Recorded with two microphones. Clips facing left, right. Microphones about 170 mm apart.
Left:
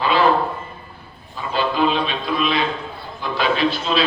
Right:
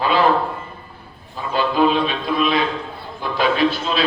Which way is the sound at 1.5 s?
45° right (ahead or behind).